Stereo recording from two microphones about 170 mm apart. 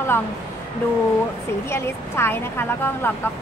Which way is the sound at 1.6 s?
15° left (ahead or behind).